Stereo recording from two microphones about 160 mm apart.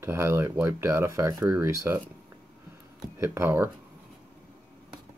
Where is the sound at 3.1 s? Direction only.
15° right (ahead or behind).